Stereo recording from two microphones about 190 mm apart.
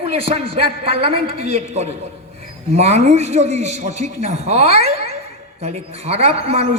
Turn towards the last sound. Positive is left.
turn(degrees=-30)  # may be behind; listen again after turning